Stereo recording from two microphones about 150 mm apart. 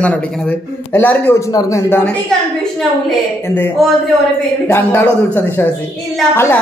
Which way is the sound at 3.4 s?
15° left (ahead or behind).